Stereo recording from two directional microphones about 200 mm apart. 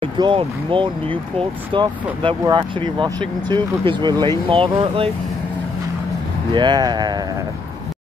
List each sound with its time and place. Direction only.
0.0 s speech: 25° right (ahead or behind)
6.5 s speech: 20° right (ahead or behind)